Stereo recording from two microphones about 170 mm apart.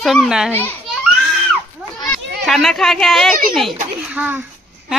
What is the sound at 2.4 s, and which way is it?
Speech, centre (ahead or behind).